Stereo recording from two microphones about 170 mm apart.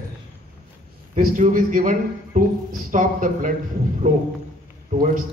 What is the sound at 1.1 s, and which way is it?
A man's voice, 50° right (ahead or behind).